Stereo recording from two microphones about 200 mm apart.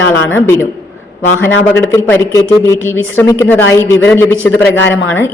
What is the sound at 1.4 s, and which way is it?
A man's voice, 10° left (ahead or behind).